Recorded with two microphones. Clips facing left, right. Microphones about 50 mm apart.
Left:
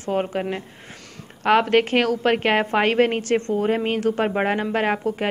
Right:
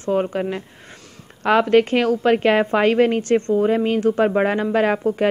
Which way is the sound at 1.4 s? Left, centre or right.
Left.